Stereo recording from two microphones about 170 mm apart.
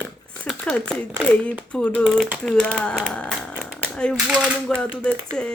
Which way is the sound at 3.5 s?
5° right (ahead or behind).